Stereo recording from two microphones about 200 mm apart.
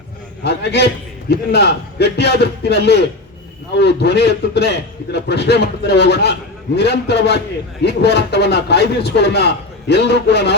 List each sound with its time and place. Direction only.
0.4 s a man's voice: 55° left (ahead or behind)